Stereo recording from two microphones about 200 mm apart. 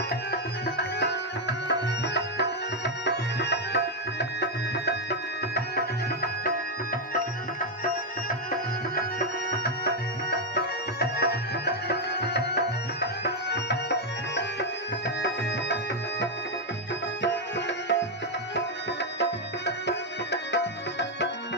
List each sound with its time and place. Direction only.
0.3 s tabla: 55° left (ahead or behind)
4.2 s music: 55° left (ahead or behind)
9.0 s music: 50° left (ahead or behind)
17.7 s music: 60° left (ahead or behind)
18.5 s tabla: 60° left (ahead or behind)